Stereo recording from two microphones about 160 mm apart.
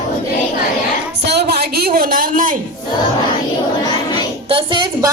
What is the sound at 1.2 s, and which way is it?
A woman's voice, 90° right.